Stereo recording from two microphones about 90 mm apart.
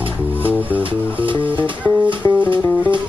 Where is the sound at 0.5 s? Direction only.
15° right (ahead or behind).